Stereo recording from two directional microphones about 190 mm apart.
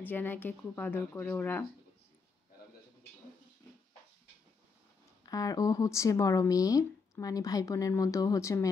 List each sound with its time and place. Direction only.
0.0 s speech: 10° left (ahead or behind)
5.2 s speech: 20° left (ahead or behind)